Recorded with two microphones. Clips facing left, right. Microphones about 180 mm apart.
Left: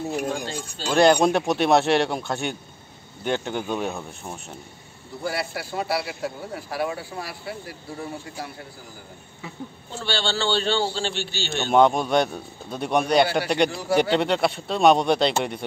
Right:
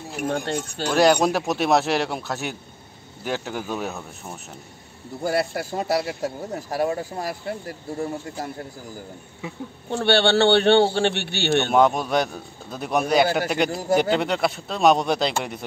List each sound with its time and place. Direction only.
0.3 s speech: 70° right (ahead or behind)
0.9 s a man's voice: centre (ahead or behind)
5.2 s a man's voice: 45° right (ahead or behind)
9.8 s a man's voice: 60° right (ahead or behind)
11.7 s a man's voice: centre (ahead or behind)
13.7 s a man's voice: 45° right (ahead or behind)
14.1 s a man's voice: centre (ahead or behind)